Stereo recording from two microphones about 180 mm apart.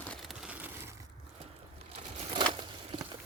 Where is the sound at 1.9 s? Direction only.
35° right (ahead or behind).